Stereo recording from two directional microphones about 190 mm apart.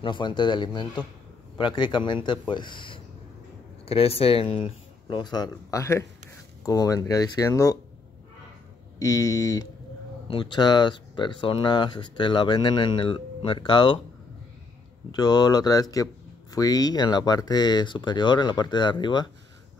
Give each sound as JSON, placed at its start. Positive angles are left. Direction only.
{"t": 0.0, "sound": "speech", "side_deg": 25}
{"t": 9.0, "sound": "speech", "side_deg": 15}
{"t": 15.0, "sound": "speech", "side_deg": 20}